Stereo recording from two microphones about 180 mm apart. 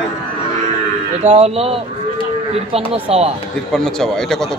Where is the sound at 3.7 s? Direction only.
5° left (ahead or behind).